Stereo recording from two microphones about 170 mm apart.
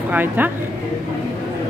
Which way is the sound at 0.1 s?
10° right (ahead or behind).